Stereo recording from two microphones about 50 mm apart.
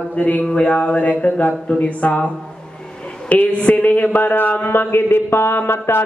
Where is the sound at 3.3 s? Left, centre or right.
Left.